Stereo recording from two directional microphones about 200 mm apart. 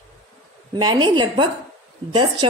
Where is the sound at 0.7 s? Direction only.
20° right (ahead or behind).